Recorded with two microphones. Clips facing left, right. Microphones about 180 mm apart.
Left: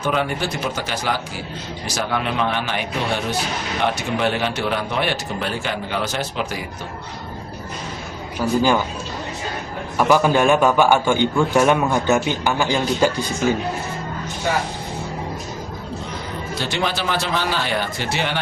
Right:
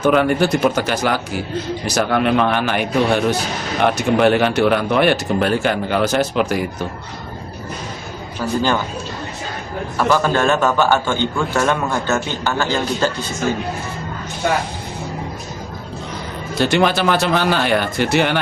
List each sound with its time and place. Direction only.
0.0 s speech: 50° right (ahead or behind)
8.4 s a man's voice: 10° left (ahead or behind)
10.0 s a man's voice: 15° left (ahead or behind)
16.6 s a man's voice: 60° right (ahead or behind)